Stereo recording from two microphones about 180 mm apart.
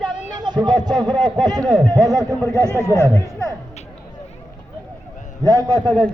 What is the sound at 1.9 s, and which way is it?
Speech, 20° right (ahead or behind).